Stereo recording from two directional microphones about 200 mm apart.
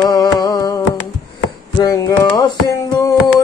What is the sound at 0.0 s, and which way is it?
Music, 20° left (ahead or behind).